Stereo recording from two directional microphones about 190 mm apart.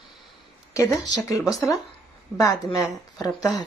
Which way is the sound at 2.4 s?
20° left (ahead or behind).